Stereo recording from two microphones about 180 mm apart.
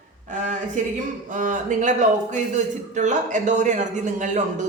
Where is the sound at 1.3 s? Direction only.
45° right (ahead or behind).